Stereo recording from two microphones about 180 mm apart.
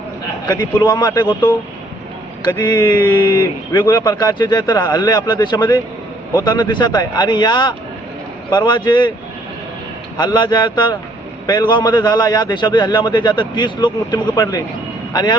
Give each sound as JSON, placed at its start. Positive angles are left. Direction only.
{"t": 0.4, "sound": "speech", "side_deg": 25}
{"t": 10.2, "sound": "speech", "side_deg": 25}